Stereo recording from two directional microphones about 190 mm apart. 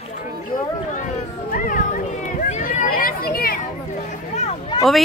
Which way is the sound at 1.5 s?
45° left (ahead or behind).